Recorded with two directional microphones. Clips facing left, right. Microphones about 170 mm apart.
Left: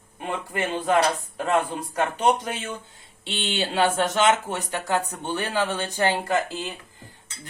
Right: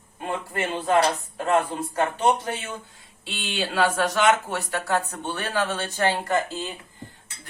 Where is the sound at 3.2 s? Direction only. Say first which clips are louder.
Left 2 dB; 25° left (ahead or behind).